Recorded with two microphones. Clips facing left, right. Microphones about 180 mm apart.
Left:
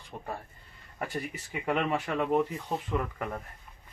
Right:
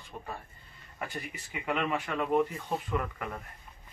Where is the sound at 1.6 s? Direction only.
35° left (ahead or behind).